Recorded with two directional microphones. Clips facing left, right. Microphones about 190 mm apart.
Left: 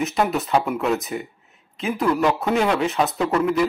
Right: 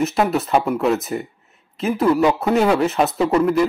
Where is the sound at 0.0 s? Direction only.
Centre (ahead or behind).